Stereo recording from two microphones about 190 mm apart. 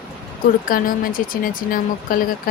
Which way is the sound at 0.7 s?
45° left (ahead or behind).